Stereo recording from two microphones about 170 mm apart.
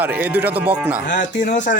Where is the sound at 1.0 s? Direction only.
50° left (ahead or behind).